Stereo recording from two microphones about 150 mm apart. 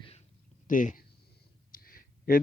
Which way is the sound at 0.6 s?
60° left (ahead or behind).